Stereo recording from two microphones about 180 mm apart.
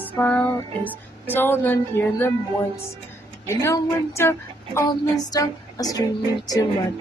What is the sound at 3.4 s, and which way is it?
Speech, 15° left (ahead or behind).